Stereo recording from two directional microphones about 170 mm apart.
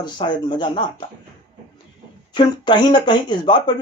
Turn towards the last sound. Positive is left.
turn(degrees=25)  # may be behind; listen again after turning